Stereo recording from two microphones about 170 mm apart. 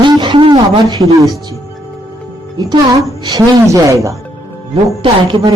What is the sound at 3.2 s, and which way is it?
Speech, 20° right (ahead or behind).